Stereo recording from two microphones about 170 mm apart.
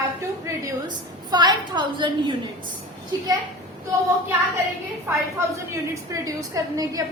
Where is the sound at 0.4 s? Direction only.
20° right (ahead or behind).